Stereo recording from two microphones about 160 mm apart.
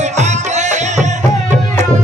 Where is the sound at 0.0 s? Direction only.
45° right (ahead or behind).